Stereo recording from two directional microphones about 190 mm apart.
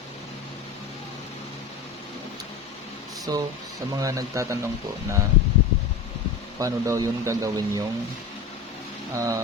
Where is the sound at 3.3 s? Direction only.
20° right (ahead or behind).